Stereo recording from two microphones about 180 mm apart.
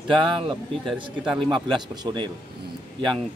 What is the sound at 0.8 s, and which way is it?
Speech, 5° right (ahead or behind).